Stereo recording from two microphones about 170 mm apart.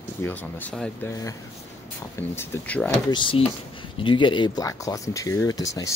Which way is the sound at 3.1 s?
30° left (ahead or behind).